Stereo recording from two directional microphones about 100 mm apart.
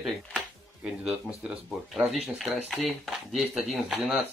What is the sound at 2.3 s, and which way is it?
Speech, centre (ahead or behind).